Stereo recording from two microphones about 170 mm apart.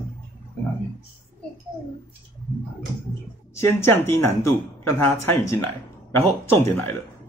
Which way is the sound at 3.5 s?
15° left (ahead or behind).